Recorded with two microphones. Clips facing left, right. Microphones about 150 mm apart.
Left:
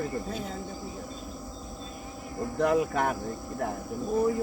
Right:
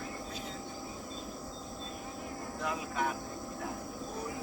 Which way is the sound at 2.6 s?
55° left (ahead or behind).